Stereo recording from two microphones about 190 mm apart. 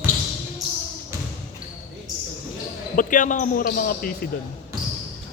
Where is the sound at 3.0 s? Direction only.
45° left (ahead or behind).